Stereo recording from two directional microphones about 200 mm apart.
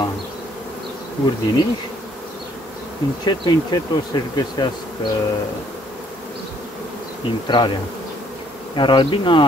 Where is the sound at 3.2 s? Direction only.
20° left (ahead or behind).